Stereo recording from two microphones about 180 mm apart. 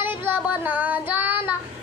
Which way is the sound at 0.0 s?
10° right (ahead or behind).